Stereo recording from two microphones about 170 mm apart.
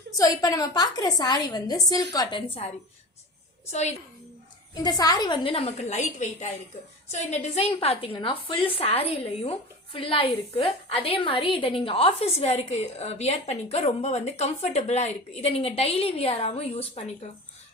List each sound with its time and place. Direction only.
0.2 s a woman's voice: 20° left (ahead or behind)
3.7 s a woman's voice: 40° left (ahead or behind)
4.7 s a woman's voice: 20° left (ahead or behind)